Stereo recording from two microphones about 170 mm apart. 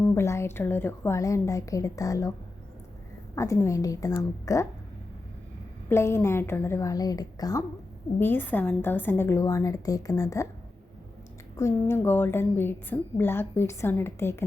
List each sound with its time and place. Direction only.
0.0 s a woman's voice: 15° left (ahead or behind)
3.3 s a woman's voice: 15° left (ahead or behind)
5.9 s a woman's voice: 15° left (ahead or behind)
11.5 s a woman's voice: 15° left (ahead or behind)